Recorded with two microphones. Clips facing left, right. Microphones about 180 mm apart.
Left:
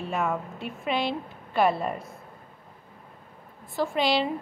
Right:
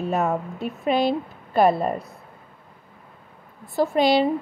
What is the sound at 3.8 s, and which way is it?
Speech, 40° right (ahead or behind).